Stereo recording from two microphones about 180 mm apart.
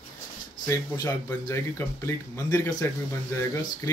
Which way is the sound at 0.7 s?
15° left (ahead or behind).